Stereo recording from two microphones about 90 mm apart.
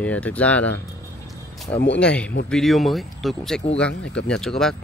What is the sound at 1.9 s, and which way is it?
Speech, 15° left (ahead or behind).